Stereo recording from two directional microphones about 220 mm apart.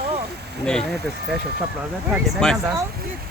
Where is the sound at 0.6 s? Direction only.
5° left (ahead or behind).